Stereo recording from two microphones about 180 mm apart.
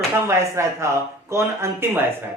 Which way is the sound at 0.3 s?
15° right (ahead or behind).